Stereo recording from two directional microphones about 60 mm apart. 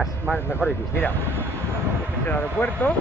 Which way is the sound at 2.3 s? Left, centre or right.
Left.